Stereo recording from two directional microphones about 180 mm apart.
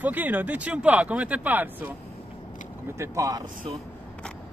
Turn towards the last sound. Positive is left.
turn(degrees=-20)  # may be behind; listen again after turning